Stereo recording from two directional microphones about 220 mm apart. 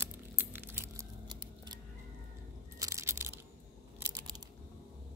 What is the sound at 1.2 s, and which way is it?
Scissors, 20° right (ahead or behind).